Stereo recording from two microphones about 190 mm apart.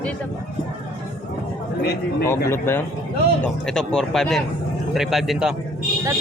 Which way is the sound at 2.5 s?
10° left (ahead or behind).